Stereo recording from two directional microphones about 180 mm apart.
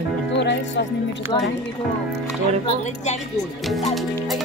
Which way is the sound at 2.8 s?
40° left (ahead or behind).